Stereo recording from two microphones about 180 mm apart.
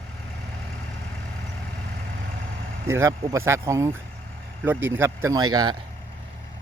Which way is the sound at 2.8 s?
15° right (ahead or behind).